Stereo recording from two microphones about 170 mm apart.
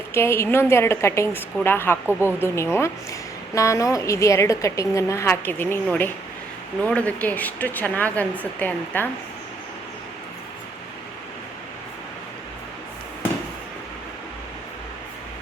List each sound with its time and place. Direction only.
0.1 s a woman's voice: 15° left (ahead or behind)